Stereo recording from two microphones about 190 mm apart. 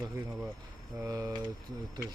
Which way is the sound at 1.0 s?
15° right (ahead or behind).